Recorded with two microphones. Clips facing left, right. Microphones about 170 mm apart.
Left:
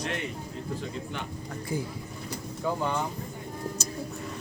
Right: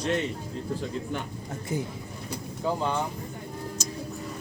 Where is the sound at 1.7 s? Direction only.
20° right (ahead or behind).